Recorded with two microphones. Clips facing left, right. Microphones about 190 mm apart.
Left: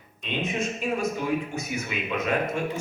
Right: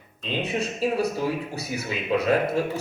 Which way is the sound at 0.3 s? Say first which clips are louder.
Right 1 dB; 35° right (ahead or behind).